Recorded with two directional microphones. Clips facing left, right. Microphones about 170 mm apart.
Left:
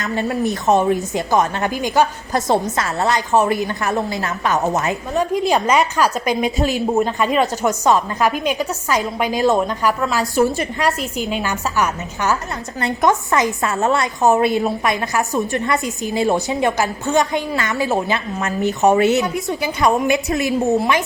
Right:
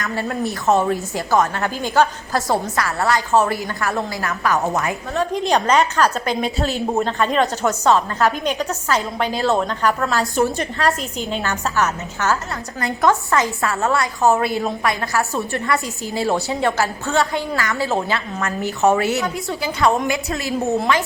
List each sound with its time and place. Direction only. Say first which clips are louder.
0.0 s a woman's voice: left 3 dB; 20° left (ahead or behind)
5.3 s a woman's voice: even; 5° left (ahead or behind)